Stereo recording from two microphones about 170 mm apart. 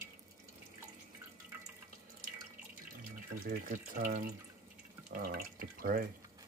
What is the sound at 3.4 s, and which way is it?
Speech, 50° right (ahead or behind).